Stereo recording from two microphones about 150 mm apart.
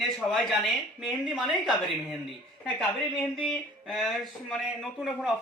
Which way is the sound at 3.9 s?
Centre (ahead or behind).